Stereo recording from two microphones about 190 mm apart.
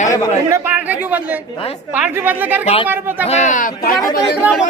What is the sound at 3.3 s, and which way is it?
Speech, 40° left (ahead or behind).